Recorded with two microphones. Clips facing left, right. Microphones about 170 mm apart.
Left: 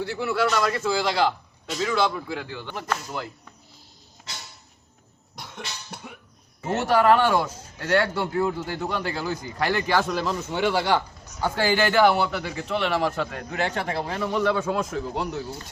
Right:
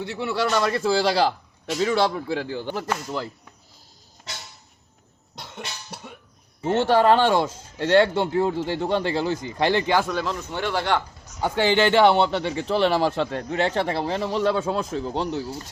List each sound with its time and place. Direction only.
0.0 s a man's voice: 25° right (ahead or behind)
6.6 s a man's voice: 30° right (ahead or behind)
10.1 s speech: 5° left (ahead or behind)
11.3 s a man's voice: 20° right (ahead or behind)